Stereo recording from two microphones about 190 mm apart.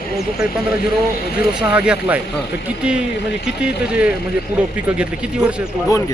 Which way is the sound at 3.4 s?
5° right (ahead or behind).